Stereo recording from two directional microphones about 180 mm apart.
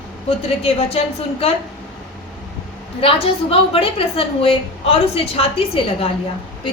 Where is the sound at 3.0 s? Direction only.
30° left (ahead or behind).